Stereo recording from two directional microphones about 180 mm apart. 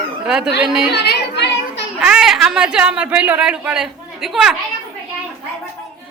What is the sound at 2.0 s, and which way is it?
Speech, 5° right (ahead or behind).